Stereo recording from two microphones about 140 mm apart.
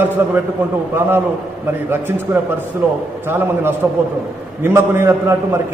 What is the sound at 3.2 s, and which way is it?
A man's voice, 15° right (ahead or behind).